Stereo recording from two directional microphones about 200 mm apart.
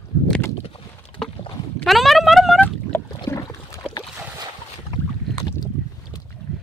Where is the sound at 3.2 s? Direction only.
15° left (ahead or behind).